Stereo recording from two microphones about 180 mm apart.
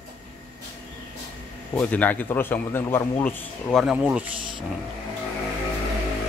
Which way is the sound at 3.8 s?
5° right (ahead or behind).